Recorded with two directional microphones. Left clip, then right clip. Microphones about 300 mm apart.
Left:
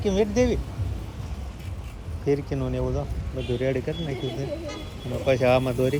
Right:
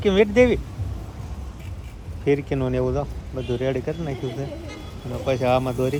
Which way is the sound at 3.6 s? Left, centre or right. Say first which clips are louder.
Right 1 dB; centre.